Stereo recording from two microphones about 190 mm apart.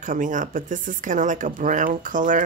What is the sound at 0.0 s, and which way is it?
Speech, 45° right (ahead or behind).